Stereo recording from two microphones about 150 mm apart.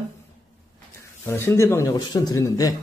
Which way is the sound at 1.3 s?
15° left (ahead or behind).